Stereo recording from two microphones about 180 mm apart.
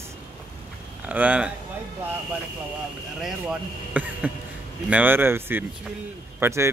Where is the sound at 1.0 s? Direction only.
10° right (ahead or behind).